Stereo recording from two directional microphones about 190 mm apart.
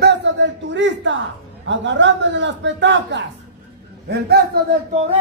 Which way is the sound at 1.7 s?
75° right (ahead or behind).